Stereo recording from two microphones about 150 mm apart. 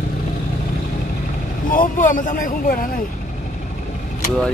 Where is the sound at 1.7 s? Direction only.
65° left (ahead or behind).